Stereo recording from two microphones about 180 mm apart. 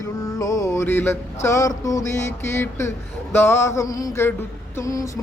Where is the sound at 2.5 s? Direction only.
15° left (ahead or behind).